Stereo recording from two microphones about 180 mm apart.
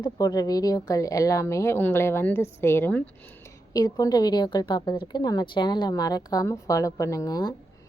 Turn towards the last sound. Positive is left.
turn(degrees=20)  # may be behind; listen again after turning